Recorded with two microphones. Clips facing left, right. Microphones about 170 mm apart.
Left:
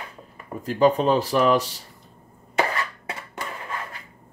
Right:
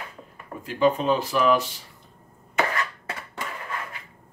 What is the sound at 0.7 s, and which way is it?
Speech, 40° left (ahead or behind).